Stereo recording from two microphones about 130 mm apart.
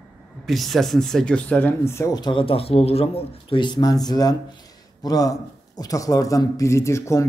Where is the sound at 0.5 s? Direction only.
Centre (ahead or behind); by 2.0 s 20° left (ahead or behind).